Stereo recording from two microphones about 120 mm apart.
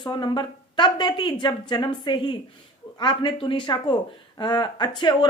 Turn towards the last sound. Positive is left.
turn(degrees=40)  # may be behind; listen again after turning